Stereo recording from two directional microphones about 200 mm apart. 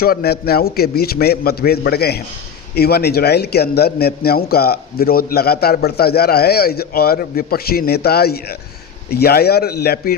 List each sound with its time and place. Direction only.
0.0 s a man's voice: 50° left (ahead or behind)